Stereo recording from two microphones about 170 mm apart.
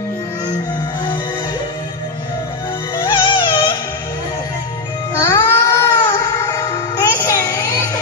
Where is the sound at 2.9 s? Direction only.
30° left (ahead or behind).